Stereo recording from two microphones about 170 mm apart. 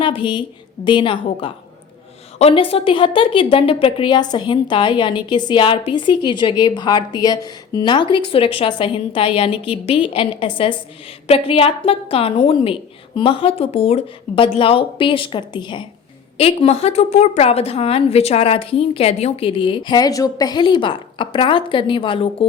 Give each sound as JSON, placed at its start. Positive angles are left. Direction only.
{"t": 0.0, "sound": "a woman's voice", "side_deg": 30}